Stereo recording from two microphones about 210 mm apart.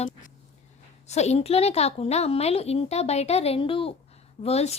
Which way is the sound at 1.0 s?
30° left (ahead or behind).